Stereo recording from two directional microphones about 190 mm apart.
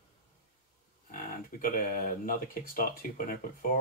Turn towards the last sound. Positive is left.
turn(degrees=50)  # may be behind; listen again after turning